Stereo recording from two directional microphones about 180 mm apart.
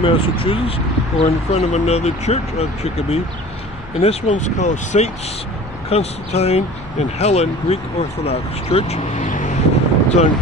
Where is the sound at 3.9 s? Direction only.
40° left (ahead or behind).